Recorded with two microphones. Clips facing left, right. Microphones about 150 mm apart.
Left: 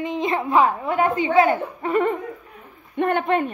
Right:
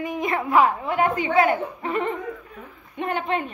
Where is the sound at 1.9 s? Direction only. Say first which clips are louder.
Left 5 dB; 45° left (ahead or behind).